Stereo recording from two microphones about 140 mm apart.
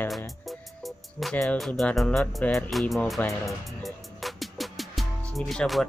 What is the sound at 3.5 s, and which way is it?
Music, centre (ahead or behind).